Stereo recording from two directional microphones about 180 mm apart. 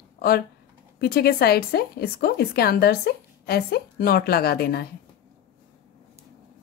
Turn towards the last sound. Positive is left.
turn(degrees=60)  # may be behind; listen again after turning